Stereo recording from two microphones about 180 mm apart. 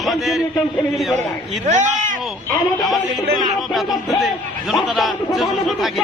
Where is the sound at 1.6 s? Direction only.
45° right (ahead or behind).